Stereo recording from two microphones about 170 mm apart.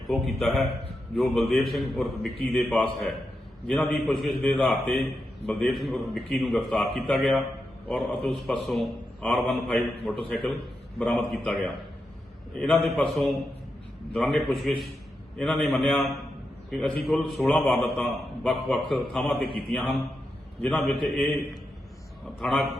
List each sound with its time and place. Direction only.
0.1 s a man's voice: centre (ahead or behind)
19.4 s a man's voice: 65° left (ahead or behind)
20.7 s a man's voice: centre (ahead or behind)
22.4 s a man's voice: 5° left (ahead or behind)